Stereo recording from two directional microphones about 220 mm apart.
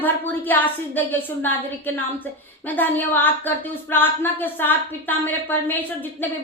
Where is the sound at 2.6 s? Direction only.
10° left (ahead or behind).